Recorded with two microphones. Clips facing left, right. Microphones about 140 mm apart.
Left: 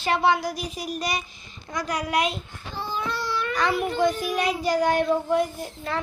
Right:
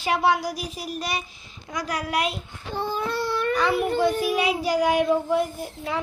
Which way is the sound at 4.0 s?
5° right (ahead or behind).